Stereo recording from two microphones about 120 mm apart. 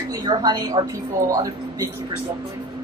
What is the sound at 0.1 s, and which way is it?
Speech, 35° right (ahead or behind).